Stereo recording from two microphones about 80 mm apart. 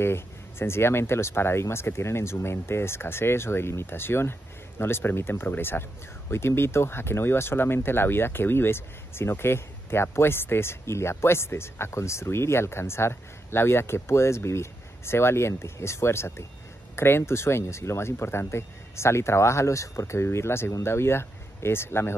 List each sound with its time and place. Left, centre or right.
0.0 s speech: left